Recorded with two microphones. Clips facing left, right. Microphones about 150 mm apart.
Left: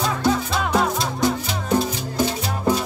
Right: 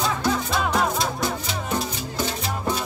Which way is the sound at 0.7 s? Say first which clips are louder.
Left 2 dB; centre (ahead or behind).